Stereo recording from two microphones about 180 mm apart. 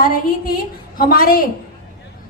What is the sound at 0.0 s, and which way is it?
A woman's voice, 55° left (ahead or behind).